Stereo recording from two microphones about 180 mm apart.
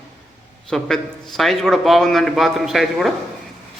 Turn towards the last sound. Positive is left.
turn(degrees=0)  # may be behind; listen again after turning